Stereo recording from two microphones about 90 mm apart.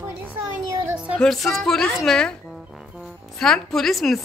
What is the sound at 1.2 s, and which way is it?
Speech, 5° left (ahead or behind).